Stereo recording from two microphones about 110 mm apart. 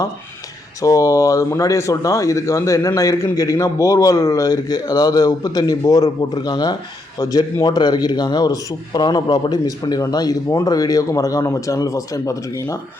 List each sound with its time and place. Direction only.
0.8 s a man's voice: 30° left (ahead or behind)